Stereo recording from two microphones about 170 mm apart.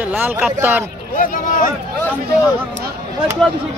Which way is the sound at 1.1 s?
50° left (ahead or behind).